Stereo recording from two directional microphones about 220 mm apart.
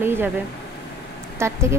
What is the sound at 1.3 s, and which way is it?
Speech, 10° right (ahead or behind).